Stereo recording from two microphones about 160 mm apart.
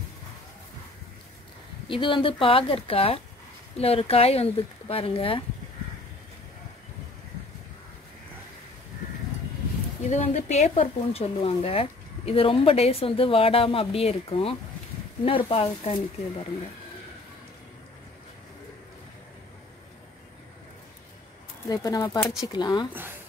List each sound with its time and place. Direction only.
1.9 s speech: 30° left (ahead or behind)
10.0 s speech: 45° left (ahead or behind)
21.6 s speech: 20° left (ahead or behind)